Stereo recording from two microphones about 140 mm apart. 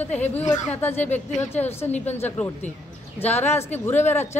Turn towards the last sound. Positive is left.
turn(degrees=15)  # may be behind; listen again after turning